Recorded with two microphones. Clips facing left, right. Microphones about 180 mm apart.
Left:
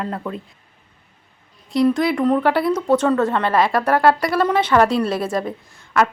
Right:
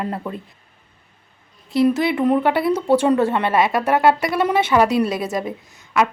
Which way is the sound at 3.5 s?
20° right (ahead or behind).